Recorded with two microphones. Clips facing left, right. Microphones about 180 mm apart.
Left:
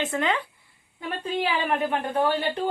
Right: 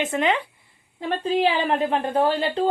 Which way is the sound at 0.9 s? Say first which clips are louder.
Right 6 dB; 30° right (ahead or behind).